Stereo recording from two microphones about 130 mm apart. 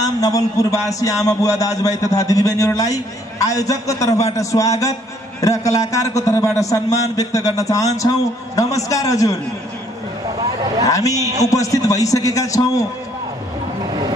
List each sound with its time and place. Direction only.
0.0 s a man's voice: 25° left (ahead or behind)
10.9 s a man's voice: 25° left (ahead or behind)